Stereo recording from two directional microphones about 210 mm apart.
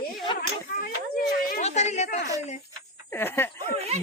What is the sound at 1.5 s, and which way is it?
Speech, 30° left (ahead or behind).